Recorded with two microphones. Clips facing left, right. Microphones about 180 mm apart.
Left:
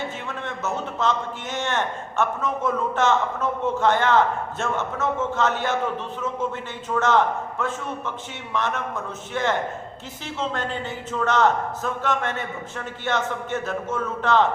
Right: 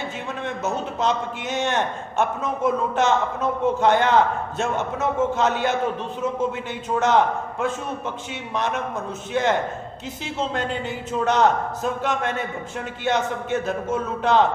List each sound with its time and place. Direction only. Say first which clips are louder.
0.4 s a man's voice: right 2 dB; 15° right (ahead or behind)
6.9 s a man's voice: right 1 dB; 15° right (ahead or behind)
8.5 s a man's voice: right 1 dB; 15° right (ahead or behind)